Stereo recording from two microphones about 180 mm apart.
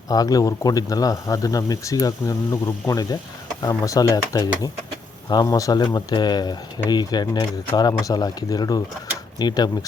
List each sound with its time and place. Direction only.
0.1 s speech: 20° left (ahead or behind)